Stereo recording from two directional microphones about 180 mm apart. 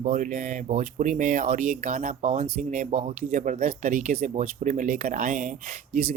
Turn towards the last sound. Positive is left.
turn(degrees=-55)  # may be behind; listen again after turning